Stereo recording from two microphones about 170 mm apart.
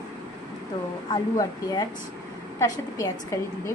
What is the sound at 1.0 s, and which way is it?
A woman's voice, 25° left (ahead or behind).